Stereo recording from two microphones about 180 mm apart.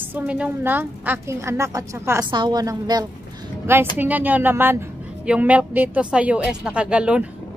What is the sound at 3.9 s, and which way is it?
A woman's voice, 10° right (ahead or behind).